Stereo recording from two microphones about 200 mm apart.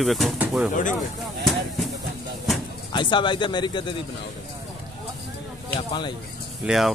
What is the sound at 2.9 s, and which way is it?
Speech, 25° left (ahead or behind).